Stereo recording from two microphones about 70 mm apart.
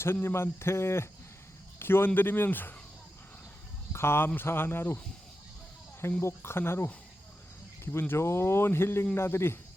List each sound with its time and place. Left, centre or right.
0.0 s speech: left
3.9 s speech: left
6.0 s speech: left
7.9 s speech: left